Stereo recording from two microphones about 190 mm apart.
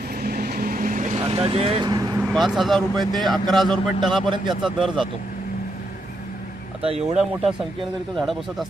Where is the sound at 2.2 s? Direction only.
Centre (ahead or behind).